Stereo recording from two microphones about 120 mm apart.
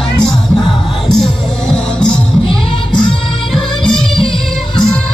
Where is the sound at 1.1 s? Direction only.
5° left (ahead or behind).